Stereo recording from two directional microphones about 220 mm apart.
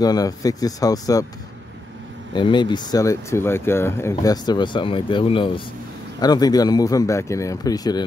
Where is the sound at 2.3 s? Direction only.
20° left (ahead or behind).